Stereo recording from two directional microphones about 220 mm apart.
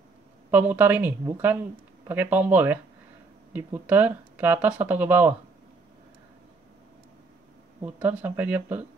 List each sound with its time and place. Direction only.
0.5 s speech: 5° right (ahead or behind)
7.8 s speech: 5° right (ahead or behind)